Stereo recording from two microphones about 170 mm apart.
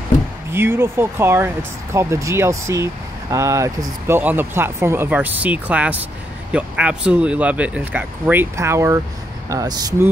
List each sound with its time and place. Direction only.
0.5 s speech: 15° right (ahead or behind)